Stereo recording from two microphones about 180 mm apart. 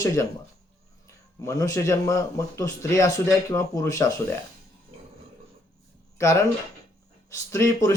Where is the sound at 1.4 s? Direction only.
20° left (ahead or behind).